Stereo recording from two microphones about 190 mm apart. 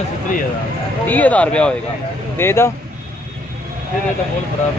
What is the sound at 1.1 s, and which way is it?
Speech, 10° left (ahead or behind).